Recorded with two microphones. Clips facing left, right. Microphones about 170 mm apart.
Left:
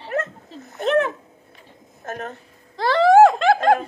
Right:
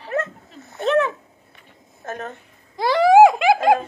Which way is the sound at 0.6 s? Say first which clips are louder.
Even; 50° left (ahead or behind).